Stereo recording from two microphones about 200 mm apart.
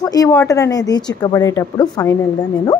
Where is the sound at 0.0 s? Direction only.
20° left (ahead or behind).